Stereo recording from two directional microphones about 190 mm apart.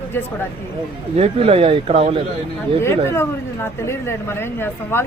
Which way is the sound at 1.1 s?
30° right (ahead or behind).